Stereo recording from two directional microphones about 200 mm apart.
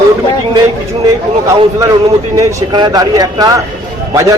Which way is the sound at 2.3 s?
20° right (ahead or behind).